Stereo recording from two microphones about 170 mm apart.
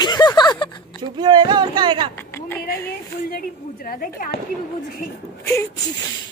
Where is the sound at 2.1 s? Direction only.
15° left (ahead or behind).